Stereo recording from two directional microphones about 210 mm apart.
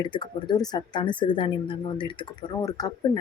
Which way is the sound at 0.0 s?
20° left (ahead or behind).